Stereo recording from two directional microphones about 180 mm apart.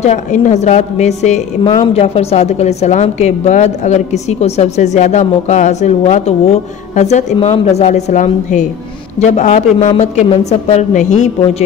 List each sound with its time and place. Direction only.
0.0 s a woman's voice: 40° left (ahead or behind)
1.6 s a woman's voice: 25° left (ahead or behind); by 11.2 s 45° left (ahead or behind)